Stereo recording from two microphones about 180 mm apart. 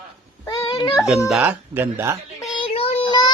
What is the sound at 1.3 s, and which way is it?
Speech, 10° right (ahead or behind).